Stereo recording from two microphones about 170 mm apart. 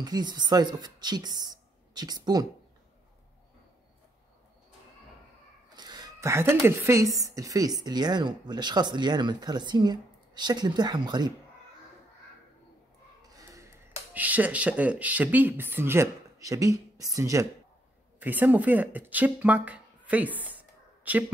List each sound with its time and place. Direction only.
0.0 s speech: 25° right (ahead or behind)
5.8 s speech: 25° right (ahead or behind)
13.2 s a sound: 20° right (ahead or behind)
14.1 s speech: 10° right (ahead or behind)